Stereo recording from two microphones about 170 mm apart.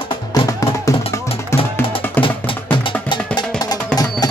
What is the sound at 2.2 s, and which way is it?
Music, 30° left (ahead or behind).